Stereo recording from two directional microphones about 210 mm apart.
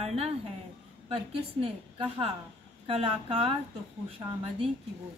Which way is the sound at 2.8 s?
25° right (ahead or behind).